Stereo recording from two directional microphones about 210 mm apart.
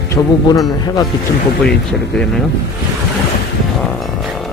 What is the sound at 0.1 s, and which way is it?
Speech, 15° left (ahead or behind).